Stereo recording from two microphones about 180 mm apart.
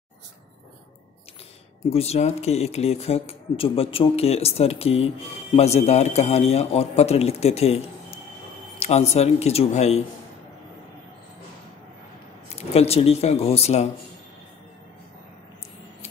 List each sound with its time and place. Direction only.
1.9 s speech: 35° left (ahead or behind)
12.5 s speech: 35° left (ahead or behind)